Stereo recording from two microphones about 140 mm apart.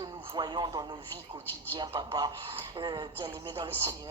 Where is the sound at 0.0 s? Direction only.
30° right (ahead or behind).